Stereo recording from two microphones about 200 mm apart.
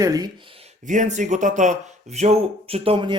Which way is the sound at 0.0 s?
15° right (ahead or behind).